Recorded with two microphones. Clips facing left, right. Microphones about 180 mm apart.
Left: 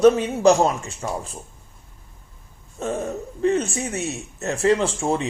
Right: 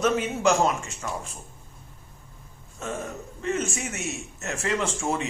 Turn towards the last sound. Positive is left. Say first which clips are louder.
# left 5 dB
turn(degrees=30)  # may be behind; listen again after turning